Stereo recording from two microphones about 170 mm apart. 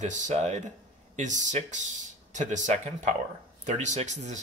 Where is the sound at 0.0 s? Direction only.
45° right (ahead or behind).